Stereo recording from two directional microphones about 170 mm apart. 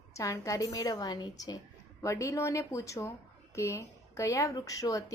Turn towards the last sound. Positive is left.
turn(degrees=20)  # may be behind; listen again after turning